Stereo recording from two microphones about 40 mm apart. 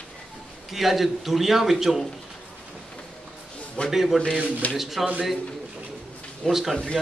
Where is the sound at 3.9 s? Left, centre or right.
Centre.